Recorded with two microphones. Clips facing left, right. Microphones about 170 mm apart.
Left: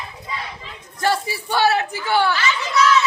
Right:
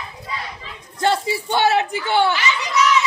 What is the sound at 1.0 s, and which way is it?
Speech, 25° right (ahead or behind).